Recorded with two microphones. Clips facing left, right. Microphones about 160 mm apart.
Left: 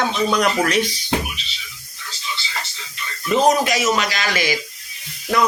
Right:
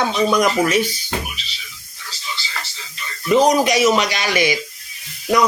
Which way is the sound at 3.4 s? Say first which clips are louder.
Right 2 dB; 15° right (ahead or behind).